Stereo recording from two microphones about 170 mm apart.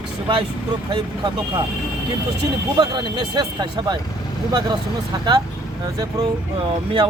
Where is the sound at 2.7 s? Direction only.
25° right (ahead or behind).